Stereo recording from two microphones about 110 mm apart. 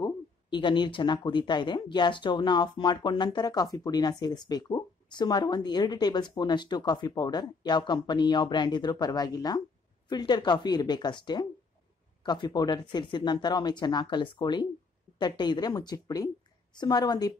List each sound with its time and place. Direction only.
0.0 s speech: 45° left (ahead or behind)